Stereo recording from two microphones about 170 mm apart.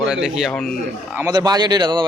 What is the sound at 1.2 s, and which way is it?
Speech, 20° right (ahead or behind).